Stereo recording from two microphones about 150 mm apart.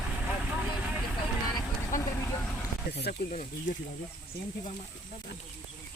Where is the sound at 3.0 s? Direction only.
90° left.